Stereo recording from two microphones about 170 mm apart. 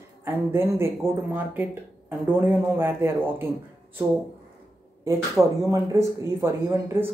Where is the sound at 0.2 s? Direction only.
15° right (ahead or behind).